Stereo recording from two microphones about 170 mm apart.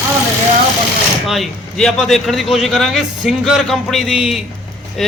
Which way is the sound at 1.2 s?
Centre (ahead or behind).